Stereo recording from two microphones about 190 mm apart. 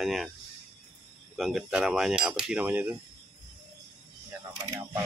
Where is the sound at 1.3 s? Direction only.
Centre (ahead or behind).